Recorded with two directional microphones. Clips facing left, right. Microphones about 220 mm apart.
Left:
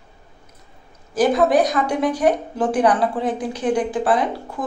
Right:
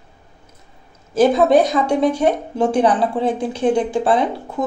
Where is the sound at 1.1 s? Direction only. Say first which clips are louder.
Right 3 dB; 25° right (ahead or behind).